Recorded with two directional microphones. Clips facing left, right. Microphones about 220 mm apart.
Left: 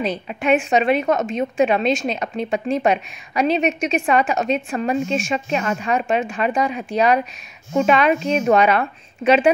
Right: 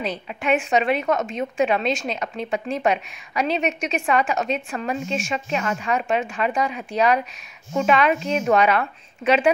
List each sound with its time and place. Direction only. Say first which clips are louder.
0.0 s a woman's voice: left 4 dB; 20° left (ahead or behind)